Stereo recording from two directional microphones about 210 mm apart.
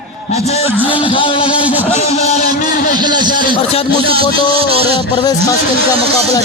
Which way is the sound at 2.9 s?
20° right (ahead or behind).